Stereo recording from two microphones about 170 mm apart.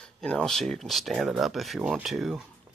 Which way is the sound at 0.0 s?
5° left (ahead or behind).